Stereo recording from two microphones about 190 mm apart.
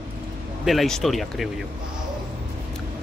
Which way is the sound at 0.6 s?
Centre (ahead or behind).